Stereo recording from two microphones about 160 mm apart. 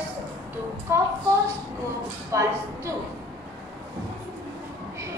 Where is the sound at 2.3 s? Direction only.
20° right (ahead or behind).